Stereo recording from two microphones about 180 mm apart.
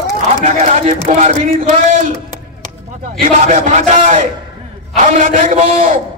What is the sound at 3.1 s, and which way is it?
A man's voice, 45° right (ahead or behind).